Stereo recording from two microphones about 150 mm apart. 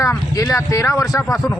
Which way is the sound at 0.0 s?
20° left (ahead or behind).